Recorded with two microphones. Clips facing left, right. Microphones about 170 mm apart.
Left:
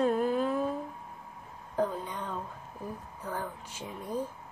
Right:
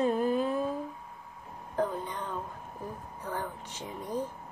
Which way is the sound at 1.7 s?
5° left (ahead or behind).